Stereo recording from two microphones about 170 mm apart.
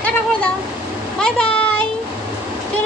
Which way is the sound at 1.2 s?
5° left (ahead or behind).